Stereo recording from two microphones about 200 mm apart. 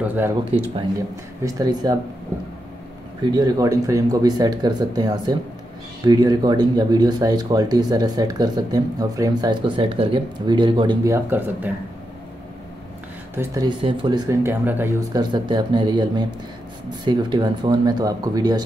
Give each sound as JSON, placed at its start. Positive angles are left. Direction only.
{"t": 0.0, "sound": "speech", "side_deg": -10}
{"t": 1.4, "sound": "speech", "side_deg": -20}
{"t": 3.2, "sound": "speech", "side_deg": -20}
{"t": 11.2, "sound": "speech", "side_deg": -10}
{"t": 13.3, "sound": "speech", "side_deg": -10}
{"t": 13.7, "sound": "speech", "side_deg": -20}